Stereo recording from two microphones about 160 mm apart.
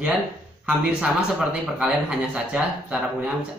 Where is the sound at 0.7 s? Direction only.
5° right (ahead or behind).